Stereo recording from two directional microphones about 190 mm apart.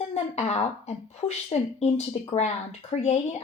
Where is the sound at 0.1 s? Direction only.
35° left (ahead or behind).